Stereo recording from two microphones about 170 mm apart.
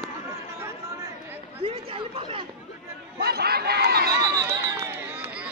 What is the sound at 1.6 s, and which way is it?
Chatter, 35° right (ahead or behind).